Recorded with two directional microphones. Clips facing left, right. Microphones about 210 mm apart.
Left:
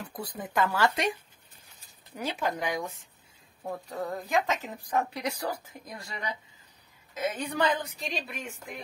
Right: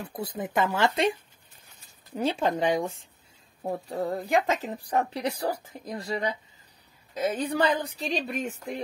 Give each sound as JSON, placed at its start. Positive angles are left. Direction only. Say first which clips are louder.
{"t": 0.1, "sound": "speech", "louder": "right 4 dB", "side_deg": -25}
{"t": 2.1, "sound": "a woman's voice", "louder": "right 6 dB", "side_deg": -30}